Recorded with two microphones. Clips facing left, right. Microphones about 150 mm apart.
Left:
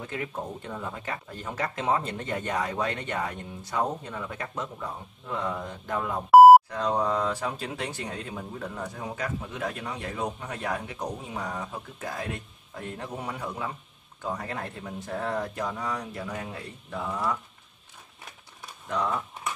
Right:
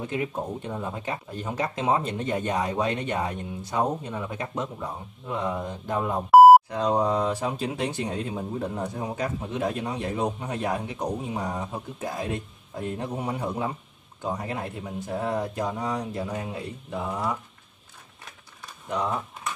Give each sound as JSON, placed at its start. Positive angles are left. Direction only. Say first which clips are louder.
{"t": 0.0, "sound": "speech", "louder": "right 5 dB", "side_deg": -20}
{"t": 6.3, "sound": "beep", "louder": "even", "side_deg": 0}
{"t": 6.7, "sound": "speech", "louder": "right 3 dB", "side_deg": -20}
{"t": 18.9, "sound": "speech", "louder": "right 1 dB", "side_deg": -20}